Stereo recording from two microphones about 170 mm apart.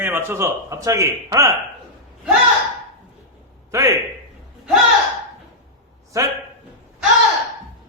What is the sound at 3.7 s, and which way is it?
Speech, 20° right (ahead or behind).